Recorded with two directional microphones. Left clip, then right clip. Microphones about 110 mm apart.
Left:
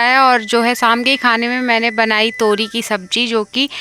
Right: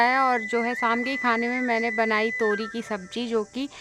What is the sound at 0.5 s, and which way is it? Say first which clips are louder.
Speech: left 11 dB; 55° left (ahead or behind).